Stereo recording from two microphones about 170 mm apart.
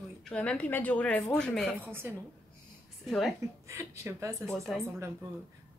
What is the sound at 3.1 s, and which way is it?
Speech, centre (ahead or behind).